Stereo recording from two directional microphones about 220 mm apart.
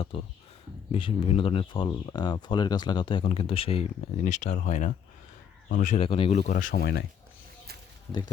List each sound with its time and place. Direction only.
0.1 s speech: 25° left (ahead or behind)
6.5 s speech: 35° left (ahead or behind)